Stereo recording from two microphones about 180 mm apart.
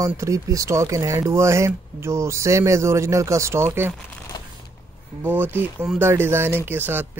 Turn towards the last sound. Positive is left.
turn(degrees=-10)  # may be behind; listen again after turning